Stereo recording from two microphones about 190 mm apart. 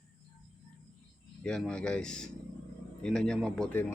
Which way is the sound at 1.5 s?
5° left (ahead or behind).